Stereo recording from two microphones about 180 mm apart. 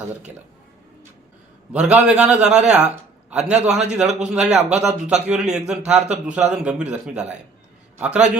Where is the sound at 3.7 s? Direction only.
40° right (ahead or behind).